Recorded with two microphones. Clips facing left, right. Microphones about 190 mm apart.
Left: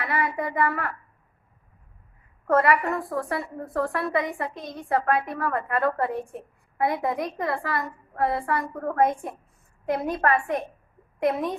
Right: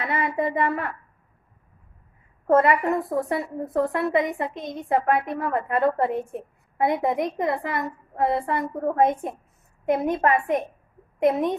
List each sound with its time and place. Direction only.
0.0 s a woman's voice: 25° right (ahead or behind)
2.4 s a woman's voice: 20° right (ahead or behind)